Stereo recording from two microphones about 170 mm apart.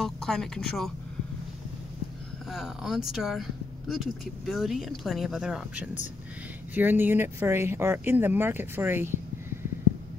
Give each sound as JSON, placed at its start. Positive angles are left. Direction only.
{"t": 0.0, "sound": "speech", "side_deg": 5}
{"t": 2.5, "sound": "speech", "side_deg": 0}